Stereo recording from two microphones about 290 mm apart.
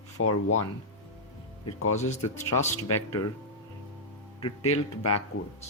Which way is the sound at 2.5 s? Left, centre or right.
Left.